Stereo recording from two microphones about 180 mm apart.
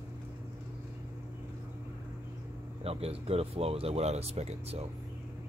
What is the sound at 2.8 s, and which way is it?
Speech, 35° right (ahead or behind).